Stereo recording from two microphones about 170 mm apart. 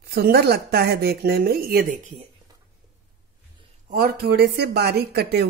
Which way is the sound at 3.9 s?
60° right (ahead or behind).